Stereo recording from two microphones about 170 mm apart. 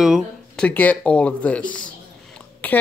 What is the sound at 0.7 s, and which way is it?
Speech, 10° left (ahead or behind).